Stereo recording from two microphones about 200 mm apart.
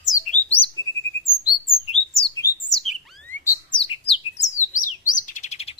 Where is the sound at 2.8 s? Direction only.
5° left (ahead or behind).